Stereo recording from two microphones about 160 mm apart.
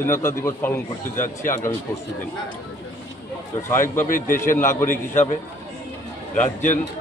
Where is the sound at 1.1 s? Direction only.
55° left (ahead or behind).